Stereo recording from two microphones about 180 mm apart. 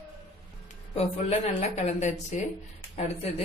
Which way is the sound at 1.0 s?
35° left (ahead or behind).